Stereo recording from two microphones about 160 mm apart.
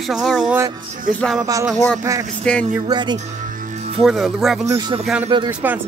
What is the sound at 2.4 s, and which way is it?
Music, 5° left (ahead or behind).